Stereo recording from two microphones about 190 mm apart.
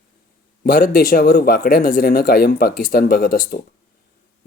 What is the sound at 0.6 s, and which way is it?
Speech, 50° left (ahead or behind).